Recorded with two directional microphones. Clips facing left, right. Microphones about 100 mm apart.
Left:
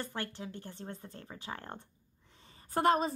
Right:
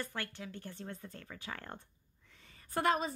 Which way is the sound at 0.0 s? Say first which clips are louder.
Left 2 dB; 30° left (ahead or behind).